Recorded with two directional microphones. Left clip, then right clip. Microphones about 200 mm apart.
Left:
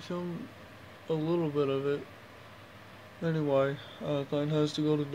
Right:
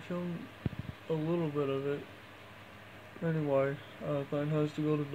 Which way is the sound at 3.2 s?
10° left (ahead or behind).